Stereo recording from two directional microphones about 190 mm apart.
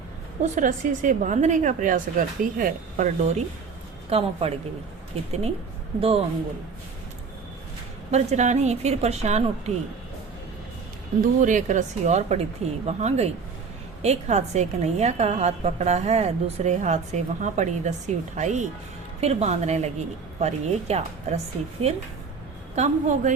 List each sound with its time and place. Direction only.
0.4 s a woman's voice: 40° right (ahead or behind)
6.0 s speech: 30° right (ahead or behind)
8.1 s a woman's voice: 35° right (ahead or behind)
11.3 s a woman's voice: 40° right (ahead or behind)